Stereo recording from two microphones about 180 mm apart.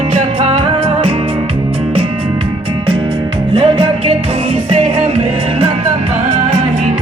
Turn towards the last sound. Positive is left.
turn(degrees=-35)  # may be behind; listen again after turning